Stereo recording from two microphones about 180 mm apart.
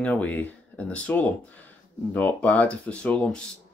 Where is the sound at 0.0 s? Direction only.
10° left (ahead or behind).